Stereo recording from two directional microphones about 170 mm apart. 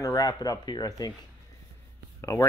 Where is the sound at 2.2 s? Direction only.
20° left (ahead or behind).